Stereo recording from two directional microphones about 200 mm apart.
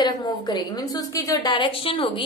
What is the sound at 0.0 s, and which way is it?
A woman's voice, 20° left (ahead or behind).